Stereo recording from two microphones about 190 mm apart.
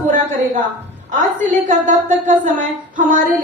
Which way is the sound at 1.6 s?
45° right (ahead or behind).